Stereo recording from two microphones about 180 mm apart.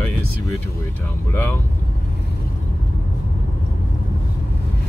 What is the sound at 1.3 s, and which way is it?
Speech, 10° left (ahead or behind).